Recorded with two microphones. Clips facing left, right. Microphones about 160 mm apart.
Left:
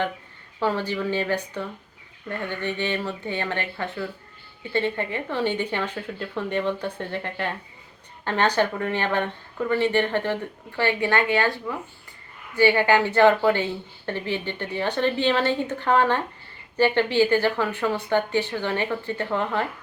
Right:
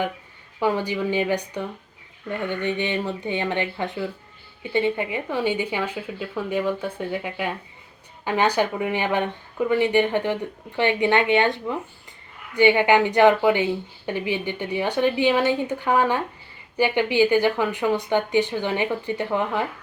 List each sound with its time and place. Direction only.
0.6 s a woman's voice: 15° right (ahead or behind)